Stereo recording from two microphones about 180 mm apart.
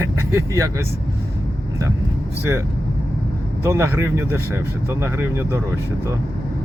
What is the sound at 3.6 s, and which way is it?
Speech, 15° right (ahead or behind).